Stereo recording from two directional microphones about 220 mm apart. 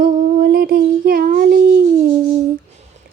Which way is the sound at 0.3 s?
40° right (ahead or behind).